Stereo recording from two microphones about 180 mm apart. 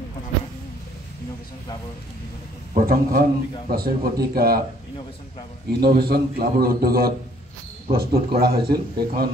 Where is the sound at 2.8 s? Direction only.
50° right (ahead or behind).